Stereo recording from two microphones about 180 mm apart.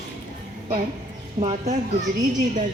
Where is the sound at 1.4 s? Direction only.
35° right (ahead or behind).